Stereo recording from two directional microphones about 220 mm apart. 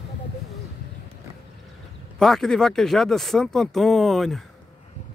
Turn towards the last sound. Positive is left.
turn(degrees=0)  # may be behind; listen again after turning